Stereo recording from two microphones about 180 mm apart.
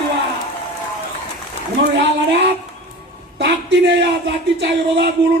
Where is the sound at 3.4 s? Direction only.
70° right (ahead or behind).